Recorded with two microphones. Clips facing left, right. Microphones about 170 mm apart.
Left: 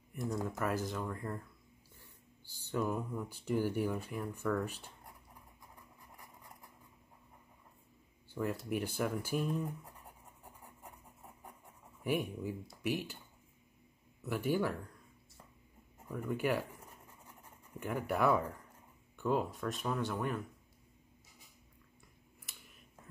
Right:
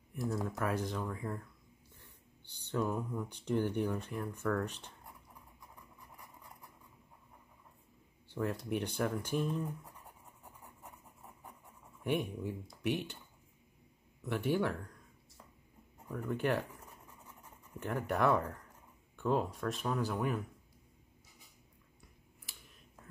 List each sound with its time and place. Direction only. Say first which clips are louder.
0.1 s speech: right 1 dB; centre (ahead or behind)
2.4 s speech: right 1 dB; 5° left (ahead or behind)
8.4 s speech: even; 5° left (ahead or behind)
12.0 s speech: even; 5° left (ahead or behind)
14.2 s speech: right 1 dB; 5° left (ahead or behind)
16.1 s speech: even; 5° left (ahead or behind)
17.7 s speech: even; 5° left (ahead or behind)